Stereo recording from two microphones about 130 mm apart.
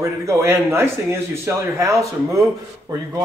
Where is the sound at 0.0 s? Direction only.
20° right (ahead or behind).